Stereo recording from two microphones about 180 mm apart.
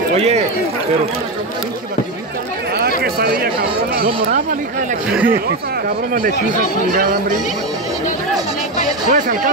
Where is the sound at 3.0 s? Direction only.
60° right (ahead or behind).